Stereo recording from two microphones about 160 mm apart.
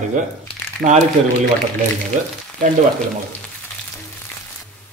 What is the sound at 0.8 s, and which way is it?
Speech, 45° right (ahead or behind).